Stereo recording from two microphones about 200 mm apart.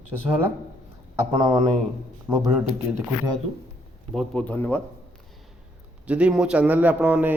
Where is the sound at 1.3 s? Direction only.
20° right (ahead or behind).